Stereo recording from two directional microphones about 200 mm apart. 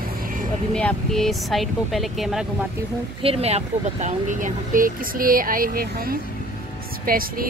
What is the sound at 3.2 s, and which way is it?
Speech, 30° right (ahead or behind).